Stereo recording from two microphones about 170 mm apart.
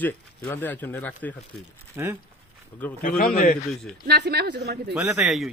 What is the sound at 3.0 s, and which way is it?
Speech, 55° left (ahead or behind).